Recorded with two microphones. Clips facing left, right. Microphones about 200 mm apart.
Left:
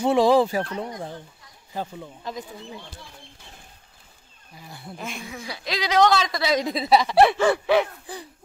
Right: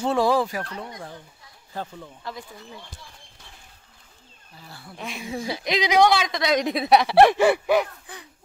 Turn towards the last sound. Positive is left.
turn(degrees=-5)  # may be behind; listen again after turning